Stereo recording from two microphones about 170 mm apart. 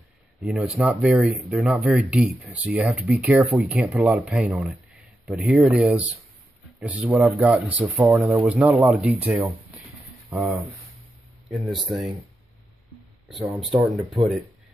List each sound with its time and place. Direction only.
0.4 s speech: centre (ahead or behind)
8.8 s speech: centre (ahead or behind)
13.3 s speech: centre (ahead or behind)